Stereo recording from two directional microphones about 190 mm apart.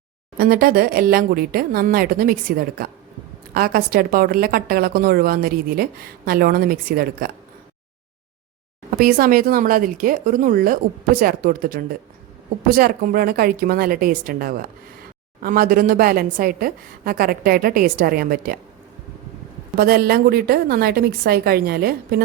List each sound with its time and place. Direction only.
0.3 s a woman's voice: 50° right (ahead or behind)
9.0 s a woman's voice: 50° right (ahead or behind)
19.7 s a woman's voice: 50° right (ahead or behind)